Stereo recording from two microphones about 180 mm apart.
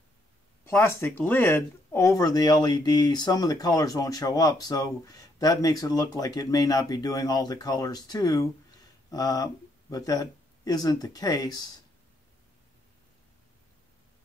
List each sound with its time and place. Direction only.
0.7 s speech: 15° left (ahead or behind)